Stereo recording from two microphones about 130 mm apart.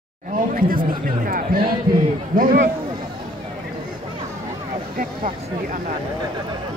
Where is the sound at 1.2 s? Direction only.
90° right.